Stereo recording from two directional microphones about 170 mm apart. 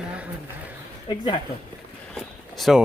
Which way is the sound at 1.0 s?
30° left (ahead or behind).